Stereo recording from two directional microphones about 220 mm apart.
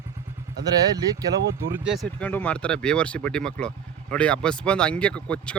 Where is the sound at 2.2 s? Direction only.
5° left (ahead or behind).